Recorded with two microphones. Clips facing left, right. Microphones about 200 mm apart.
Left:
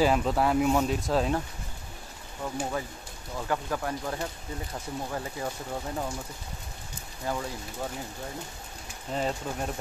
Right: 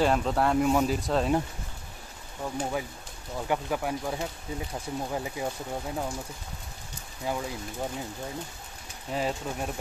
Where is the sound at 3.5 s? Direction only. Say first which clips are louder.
Right 2 dB; 10° right (ahead or behind).